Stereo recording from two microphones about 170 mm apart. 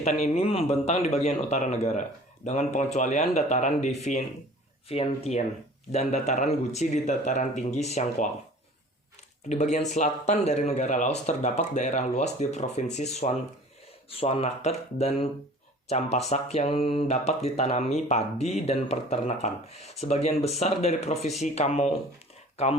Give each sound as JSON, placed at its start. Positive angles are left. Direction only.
{"t": 0.0, "sound": "a man's voice", "side_deg": 40}
{"t": 9.5, "sound": "a man's voice", "side_deg": 45}